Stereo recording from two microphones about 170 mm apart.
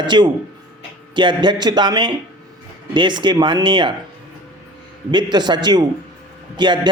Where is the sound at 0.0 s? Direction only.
25° right (ahead or behind).